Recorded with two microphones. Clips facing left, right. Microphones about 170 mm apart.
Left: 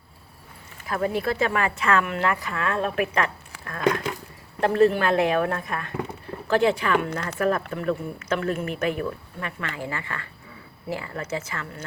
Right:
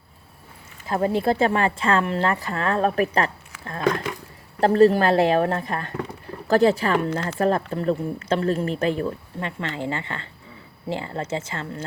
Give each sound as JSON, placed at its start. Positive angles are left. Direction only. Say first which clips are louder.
{"t": 0.9, "sound": "speech", "louder": "right 4 dB", "side_deg": -30}